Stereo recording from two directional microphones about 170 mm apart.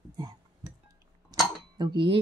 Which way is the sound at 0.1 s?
25° right (ahead or behind).